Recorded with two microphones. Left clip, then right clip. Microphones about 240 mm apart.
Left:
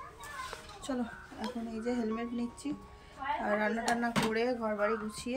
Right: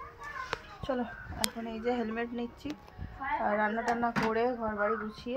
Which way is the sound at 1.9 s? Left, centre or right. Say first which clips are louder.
Right 3 dB; centre.